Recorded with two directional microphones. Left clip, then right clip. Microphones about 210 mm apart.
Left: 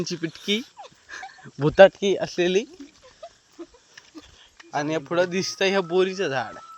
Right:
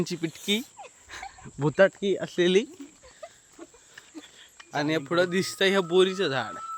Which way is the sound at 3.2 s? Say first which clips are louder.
Left 2 dB; 10° left (ahead or behind).